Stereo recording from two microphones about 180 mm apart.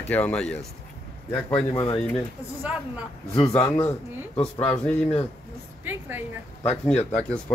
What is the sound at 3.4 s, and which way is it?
Speech, 30° left (ahead or behind).